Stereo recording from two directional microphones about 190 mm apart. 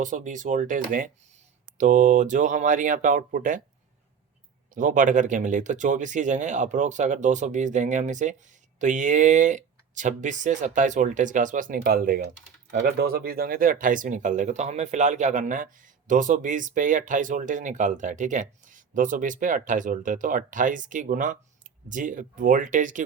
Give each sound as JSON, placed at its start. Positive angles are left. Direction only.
{"t": 0.0, "sound": "speech", "side_deg": -45}
{"t": 4.7, "sound": "speech", "side_deg": -45}